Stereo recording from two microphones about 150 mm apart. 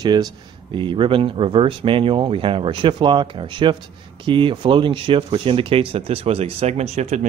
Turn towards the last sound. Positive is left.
turn(degrees=-50)  # may be behind; listen again after turning